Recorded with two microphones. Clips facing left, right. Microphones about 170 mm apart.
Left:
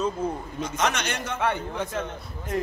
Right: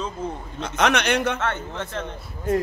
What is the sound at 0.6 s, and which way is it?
Speech, 65° right (ahead or behind).